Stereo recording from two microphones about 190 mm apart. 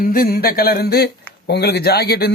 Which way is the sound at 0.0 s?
45° left (ahead or behind).